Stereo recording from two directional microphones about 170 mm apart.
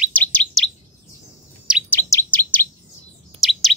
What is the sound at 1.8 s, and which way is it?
Chirp, 15° left (ahead or behind).